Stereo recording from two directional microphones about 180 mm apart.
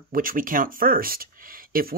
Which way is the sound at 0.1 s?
50° right (ahead or behind).